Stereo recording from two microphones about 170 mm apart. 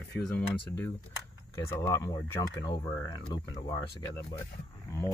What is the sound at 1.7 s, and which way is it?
Speech, 15° left (ahead or behind).